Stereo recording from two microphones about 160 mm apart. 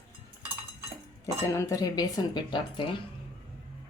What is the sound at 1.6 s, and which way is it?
A woman's voice, 20° left (ahead or behind).